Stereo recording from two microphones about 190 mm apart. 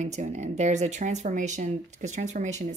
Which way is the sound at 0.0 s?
40° right (ahead or behind).